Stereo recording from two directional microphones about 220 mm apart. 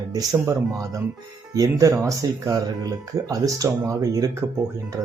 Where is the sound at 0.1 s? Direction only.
15° right (ahead or behind).